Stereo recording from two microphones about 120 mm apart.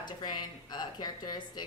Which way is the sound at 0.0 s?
35° left (ahead or behind).